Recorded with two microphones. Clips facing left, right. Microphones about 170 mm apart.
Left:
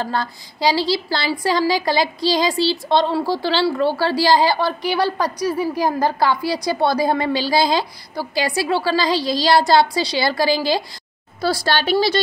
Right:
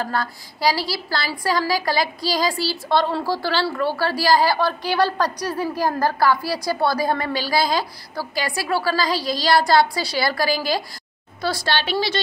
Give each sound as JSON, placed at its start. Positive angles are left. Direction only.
{"t": 0.0, "sound": "a woman's voice", "side_deg": 25}
{"t": 11.4, "sound": "a woman's voice", "side_deg": 40}